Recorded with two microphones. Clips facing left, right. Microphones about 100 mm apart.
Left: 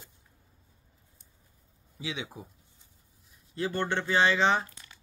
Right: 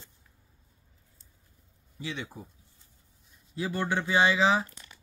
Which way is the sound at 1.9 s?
10° left (ahead or behind).